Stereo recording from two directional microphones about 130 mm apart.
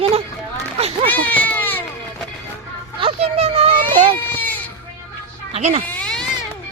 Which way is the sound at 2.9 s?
45° right (ahead or behind).